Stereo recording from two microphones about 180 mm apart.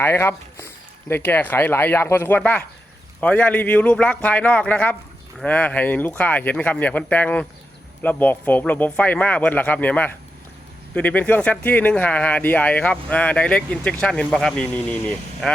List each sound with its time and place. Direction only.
0.0 s speech: 15° left (ahead or behind)